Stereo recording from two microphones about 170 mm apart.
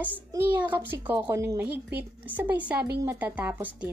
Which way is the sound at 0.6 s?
10° right (ahead or behind).